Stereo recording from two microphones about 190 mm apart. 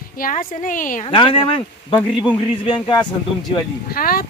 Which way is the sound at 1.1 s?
25° left (ahead or behind).